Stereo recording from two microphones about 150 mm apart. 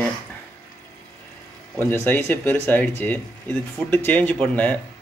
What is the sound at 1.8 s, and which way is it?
Speech, 15° left (ahead or behind).